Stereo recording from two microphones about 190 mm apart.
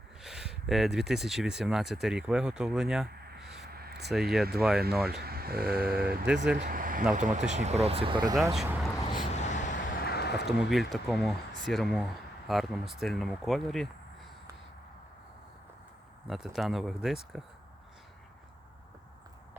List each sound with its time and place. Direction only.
0.2 s speech: centre (ahead or behind)
3.6 s a sound: 55° right (ahead or behind)
4.1 s speech: centre (ahead or behind)
4.8 s speech: 55° right (ahead or behind); by 8.4 s 25° right (ahead or behind)
8.5 s speech: 5° right (ahead or behind)
9.2 s vehicle: 35° left (ahead or behind)
9.9 s a sound: 55° left (ahead or behind)
10.4 s speech: centre (ahead or behind)
16.2 s speech: centre (ahead or behind)